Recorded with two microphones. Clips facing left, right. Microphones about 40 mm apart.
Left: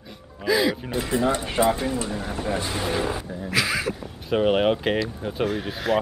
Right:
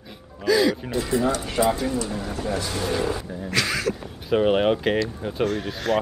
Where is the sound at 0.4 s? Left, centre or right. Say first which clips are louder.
Right 2 dB; centre.